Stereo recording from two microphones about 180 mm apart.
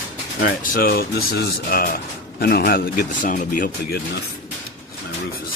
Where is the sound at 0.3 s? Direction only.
55° left (ahead or behind).